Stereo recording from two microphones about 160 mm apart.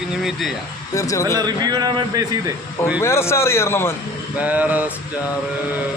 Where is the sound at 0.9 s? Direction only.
20° left (ahead or behind).